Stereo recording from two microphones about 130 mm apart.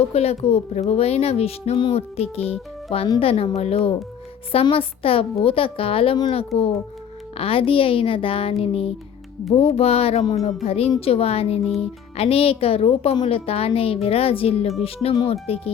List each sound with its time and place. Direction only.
0.1 s a woman's voice: 50° left (ahead or behind)
7.3 s a woman's voice: 45° left (ahead or behind)